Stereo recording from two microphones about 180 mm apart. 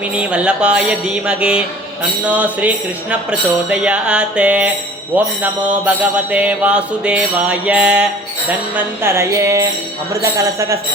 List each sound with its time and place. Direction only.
0.1 s music: 5° right (ahead or behind)